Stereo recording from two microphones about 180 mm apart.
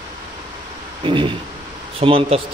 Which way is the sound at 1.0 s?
25° right (ahead or behind).